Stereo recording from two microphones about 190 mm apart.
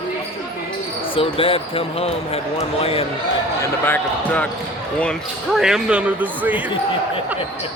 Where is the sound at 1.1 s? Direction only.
30° left (ahead or behind).